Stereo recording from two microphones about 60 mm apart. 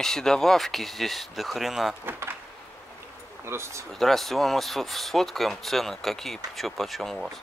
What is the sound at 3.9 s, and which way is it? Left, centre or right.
Speech, centre.